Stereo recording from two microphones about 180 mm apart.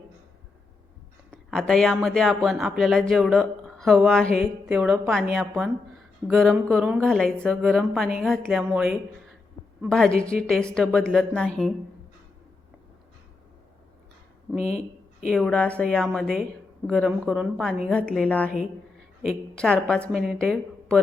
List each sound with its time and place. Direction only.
1.3 s speech: 5° left (ahead or behind)
14.5 s speech: centre (ahead or behind)